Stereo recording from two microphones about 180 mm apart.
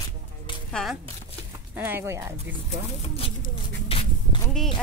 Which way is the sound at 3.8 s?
30° left (ahead or behind).